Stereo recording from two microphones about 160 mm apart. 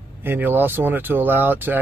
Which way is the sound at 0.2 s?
15° right (ahead or behind).